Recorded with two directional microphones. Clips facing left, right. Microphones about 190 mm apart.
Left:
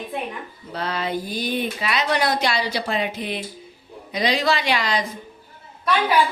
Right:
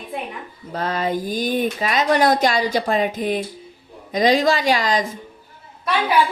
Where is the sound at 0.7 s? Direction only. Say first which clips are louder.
Right 3 dB; 45° right (ahead or behind).